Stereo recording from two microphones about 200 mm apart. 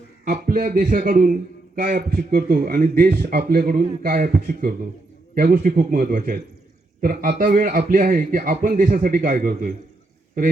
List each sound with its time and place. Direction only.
0.3 s a man's voice: 45° right (ahead or behind)